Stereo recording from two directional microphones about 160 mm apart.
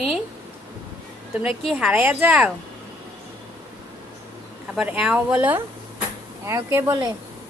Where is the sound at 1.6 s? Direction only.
5° right (ahead or behind).